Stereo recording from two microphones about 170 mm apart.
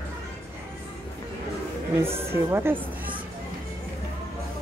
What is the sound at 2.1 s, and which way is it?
Speech, 15° right (ahead or behind).